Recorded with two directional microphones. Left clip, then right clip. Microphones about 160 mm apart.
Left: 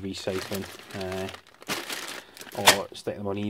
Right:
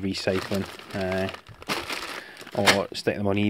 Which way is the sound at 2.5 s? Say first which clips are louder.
Even; 50° right (ahead or behind).